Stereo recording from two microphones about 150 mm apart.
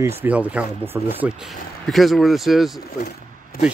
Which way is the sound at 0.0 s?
10° right (ahead or behind).